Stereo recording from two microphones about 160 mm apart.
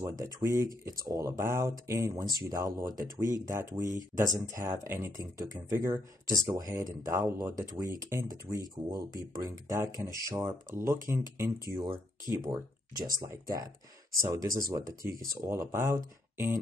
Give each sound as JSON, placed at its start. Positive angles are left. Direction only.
{"t": 0.0, "sound": "speech", "side_deg": -20}